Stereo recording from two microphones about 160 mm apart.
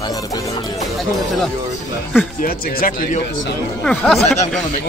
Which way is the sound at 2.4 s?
60° left (ahead or behind).